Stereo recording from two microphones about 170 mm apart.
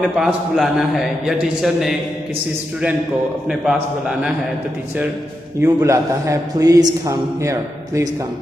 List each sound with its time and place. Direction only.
0.2 s a man's voice: centre (ahead or behind)
3.4 s a man's voice: 5° right (ahead or behind)
5.6 s a man's voice: 15° right (ahead or behind)